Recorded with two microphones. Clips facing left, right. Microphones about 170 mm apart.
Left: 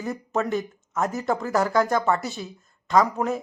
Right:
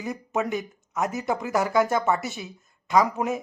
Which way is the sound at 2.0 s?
Centre (ahead or behind).